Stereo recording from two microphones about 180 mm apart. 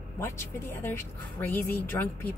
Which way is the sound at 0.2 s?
15° left (ahead or behind).